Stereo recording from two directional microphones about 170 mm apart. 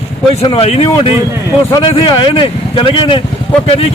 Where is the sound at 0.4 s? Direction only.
35° left (ahead or behind).